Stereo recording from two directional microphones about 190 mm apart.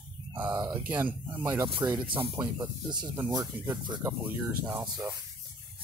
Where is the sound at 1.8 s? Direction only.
20° right (ahead or behind).